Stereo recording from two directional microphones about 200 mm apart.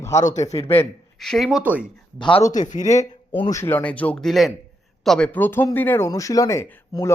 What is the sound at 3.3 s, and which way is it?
Speech, 25° left (ahead or behind).